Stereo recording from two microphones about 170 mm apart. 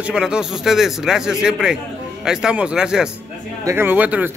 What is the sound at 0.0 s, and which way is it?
A man's voice, 5° right (ahead or behind).